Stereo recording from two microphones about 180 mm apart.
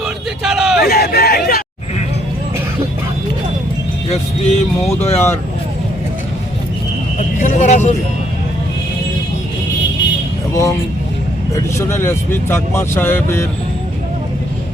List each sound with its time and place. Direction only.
0.0 s hubbub: 5° right (ahead or behind)
0.8 s hubbub: 60° left (ahead or behind)
4.1 s speech: 35° left (ahead or behind)
7.3 s speech: 45° left (ahead or behind)
10.5 s speech: 15° left (ahead or behind)